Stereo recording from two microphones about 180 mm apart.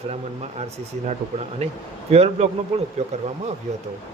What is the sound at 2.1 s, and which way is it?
Speech, 35° right (ahead or behind).